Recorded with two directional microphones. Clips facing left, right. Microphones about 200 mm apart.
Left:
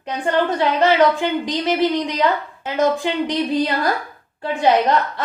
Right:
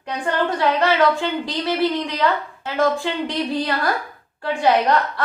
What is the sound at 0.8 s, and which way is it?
A woman's voice, 20° left (ahead or behind).